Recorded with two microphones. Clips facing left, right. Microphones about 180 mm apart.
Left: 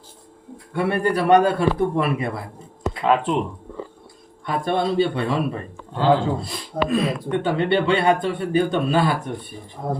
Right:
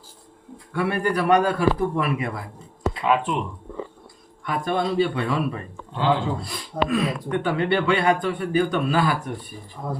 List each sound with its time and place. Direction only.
0.7 s a man's voice: 30° left (ahead or behind)
4.4 s a man's voice: 30° left (ahead or behind)
6.8 s speech: 30° left (ahead or behind)
9.8 s a man's voice: 40° left (ahead or behind)